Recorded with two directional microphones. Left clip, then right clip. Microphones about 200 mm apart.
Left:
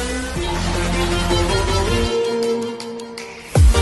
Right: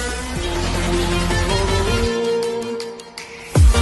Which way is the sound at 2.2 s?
Centre (ahead or behind).